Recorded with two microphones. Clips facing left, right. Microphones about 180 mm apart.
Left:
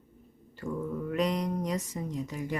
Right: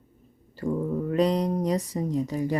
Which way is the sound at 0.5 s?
35° right (ahead or behind).